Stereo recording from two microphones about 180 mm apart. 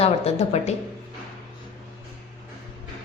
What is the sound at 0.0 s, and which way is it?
Speech, 35° left (ahead or behind).